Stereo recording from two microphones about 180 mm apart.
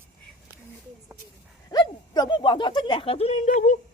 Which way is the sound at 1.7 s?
25° left (ahead or behind).